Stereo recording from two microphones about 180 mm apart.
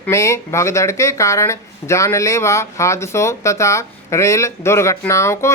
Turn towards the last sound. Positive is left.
turn(degrees=15)  # may be behind; listen again after turning